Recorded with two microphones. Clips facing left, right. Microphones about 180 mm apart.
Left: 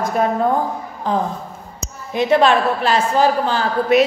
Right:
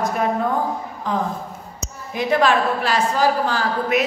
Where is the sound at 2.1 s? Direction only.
25° left (ahead or behind).